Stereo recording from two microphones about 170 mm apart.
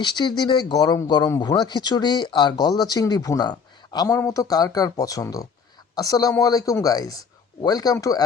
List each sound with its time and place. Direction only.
0.0 s speech: 25° left (ahead or behind)